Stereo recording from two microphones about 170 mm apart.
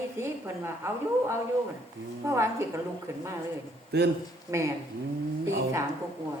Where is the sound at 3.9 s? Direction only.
75° right (ahead or behind).